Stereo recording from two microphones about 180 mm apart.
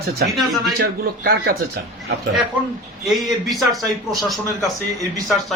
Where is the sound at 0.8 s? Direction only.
60° right (ahead or behind).